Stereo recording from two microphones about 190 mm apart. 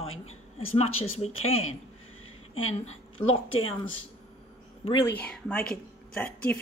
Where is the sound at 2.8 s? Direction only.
30° left (ahead or behind).